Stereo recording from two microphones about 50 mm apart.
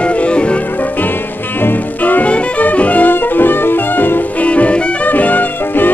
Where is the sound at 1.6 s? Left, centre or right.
Left.